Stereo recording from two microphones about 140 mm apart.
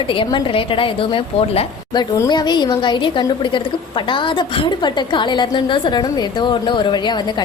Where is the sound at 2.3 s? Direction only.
30° left (ahead or behind).